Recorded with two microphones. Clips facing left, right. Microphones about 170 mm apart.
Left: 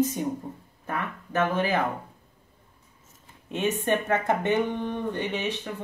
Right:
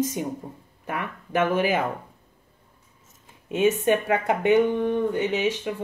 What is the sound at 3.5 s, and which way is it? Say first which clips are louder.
Speech: right 5 dB; 10° right (ahead or behind).